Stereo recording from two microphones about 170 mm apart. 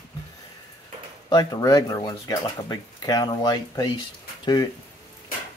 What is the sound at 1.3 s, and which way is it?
Speech, 25° left (ahead or behind).